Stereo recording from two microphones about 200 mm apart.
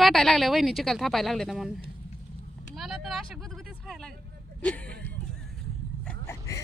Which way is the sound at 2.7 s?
Centre (ahead or behind).